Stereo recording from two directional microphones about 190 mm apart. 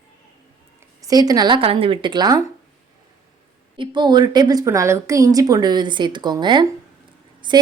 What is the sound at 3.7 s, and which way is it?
A woman's voice, 25° right (ahead or behind).